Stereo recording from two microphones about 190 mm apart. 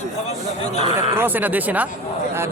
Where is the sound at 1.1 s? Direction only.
10° right (ahead or behind).